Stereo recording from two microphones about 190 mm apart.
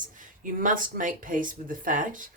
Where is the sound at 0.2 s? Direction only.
45° right (ahead or behind).